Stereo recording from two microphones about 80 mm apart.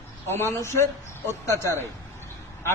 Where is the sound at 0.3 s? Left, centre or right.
Left.